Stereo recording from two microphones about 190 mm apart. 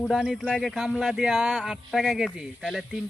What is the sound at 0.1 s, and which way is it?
Speech, centre (ahead or behind).